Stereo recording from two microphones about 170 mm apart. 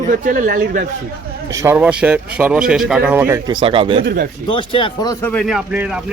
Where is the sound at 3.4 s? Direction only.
30° right (ahead or behind).